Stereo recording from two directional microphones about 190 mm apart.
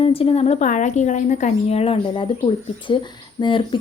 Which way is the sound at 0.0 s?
30° left (ahead or behind).